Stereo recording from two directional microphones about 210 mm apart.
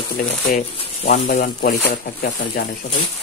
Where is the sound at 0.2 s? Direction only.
35° left (ahead or behind).